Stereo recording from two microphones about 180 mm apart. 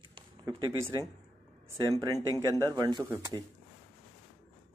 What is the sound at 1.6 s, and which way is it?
Speech, 20° right (ahead or behind).